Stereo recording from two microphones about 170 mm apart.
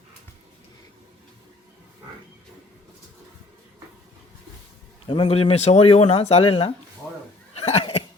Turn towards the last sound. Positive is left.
turn(degrees=35)  # may be behind; listen again after turning